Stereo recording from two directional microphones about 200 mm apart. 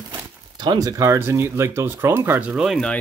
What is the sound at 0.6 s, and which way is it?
Speech, 20° right (ahead or behind).